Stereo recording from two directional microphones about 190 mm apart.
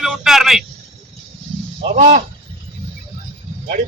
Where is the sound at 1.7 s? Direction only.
35° right (ahead or behind).